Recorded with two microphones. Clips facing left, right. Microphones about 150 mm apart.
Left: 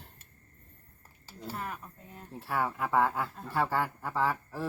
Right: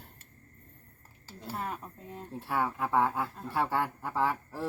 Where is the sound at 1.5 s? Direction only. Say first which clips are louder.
Right 4 dB; 30° right (ahead or behind).